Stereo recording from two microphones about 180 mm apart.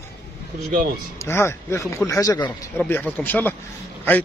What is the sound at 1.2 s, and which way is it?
Speech, 15° left (ahead or behind).